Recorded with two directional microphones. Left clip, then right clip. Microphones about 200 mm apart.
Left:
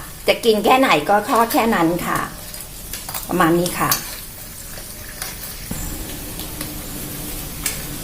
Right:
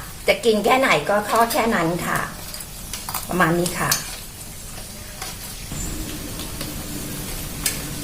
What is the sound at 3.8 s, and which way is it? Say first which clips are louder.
Speech: left 1 dB; 35° left (ahead or behind).